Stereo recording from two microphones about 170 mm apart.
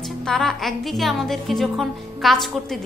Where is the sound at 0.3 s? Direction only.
Centre (ahead or behind).